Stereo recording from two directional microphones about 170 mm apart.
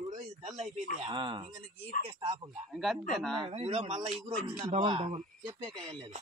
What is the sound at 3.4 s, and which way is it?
A man's voice, 35° right (ahead or behind).